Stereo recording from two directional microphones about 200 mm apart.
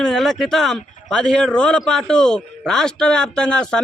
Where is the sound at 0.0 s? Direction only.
Centre (ahead or behind).